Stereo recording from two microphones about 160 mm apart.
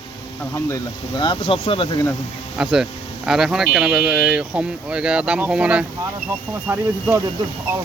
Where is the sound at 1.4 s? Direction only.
35° left (ahead or behind).